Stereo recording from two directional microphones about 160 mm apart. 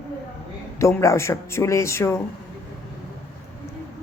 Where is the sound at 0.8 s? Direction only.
20° left (ahead or behind).